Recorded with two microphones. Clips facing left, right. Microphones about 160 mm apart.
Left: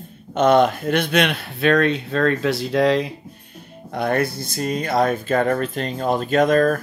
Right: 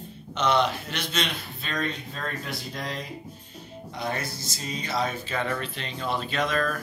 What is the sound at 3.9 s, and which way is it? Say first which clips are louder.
Speech: left 11 dB; 55° left (ahead or behind).